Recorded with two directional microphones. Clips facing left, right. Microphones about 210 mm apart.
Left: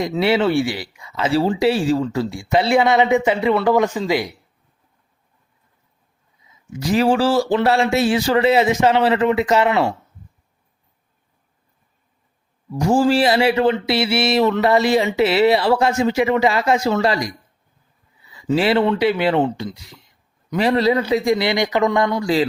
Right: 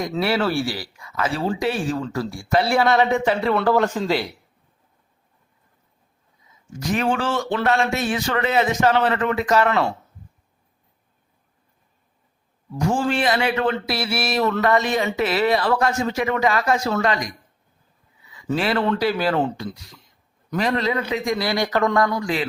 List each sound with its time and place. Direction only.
0.2 s speech: 20° left (ahead or behind)
6.8 s speech: 30° left (ahead or behind)
12.8 s a sound: 35° left (ahead or behind)
13.7 s speech: 25° left (ahead or behind)
18.3 s a sound: 30° left (ahead or behind)
18.9 s speech: 25° left (ahead or behind)
20.6 s speech: 30° left (ahead or behind)